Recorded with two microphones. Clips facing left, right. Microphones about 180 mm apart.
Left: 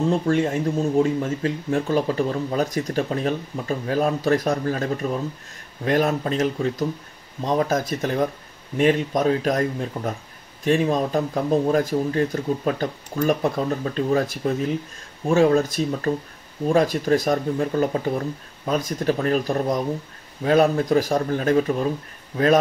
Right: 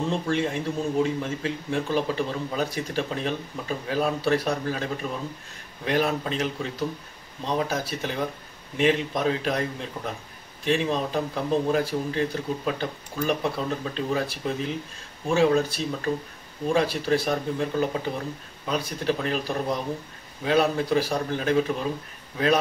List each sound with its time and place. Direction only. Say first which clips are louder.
0.1 s speech: left 5 dB; 45° left (ahead or behind)